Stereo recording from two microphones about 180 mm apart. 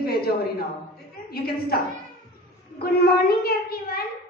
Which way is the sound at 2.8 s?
60° left (ahead or behind).